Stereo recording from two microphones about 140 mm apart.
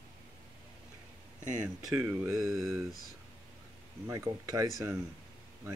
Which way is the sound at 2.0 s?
20° right (ahead or behind).